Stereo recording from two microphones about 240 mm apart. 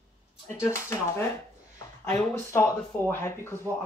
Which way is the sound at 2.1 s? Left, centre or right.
Centre.